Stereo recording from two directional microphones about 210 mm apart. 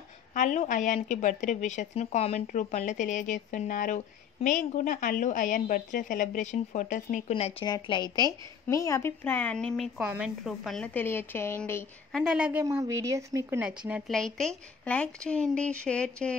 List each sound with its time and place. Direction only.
0.3 s a woman's voice: 35° left (ahead or behind); by 12.2 s 10° left (ahead or behind)
12.2 s a woman's voice: 5° right (ahead or behind)